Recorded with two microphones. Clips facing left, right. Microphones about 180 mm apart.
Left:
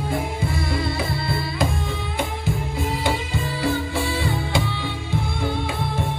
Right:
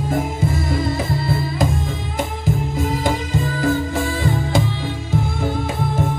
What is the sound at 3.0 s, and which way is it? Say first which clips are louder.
Music: right 4 dB; 40° right (ahead or behind).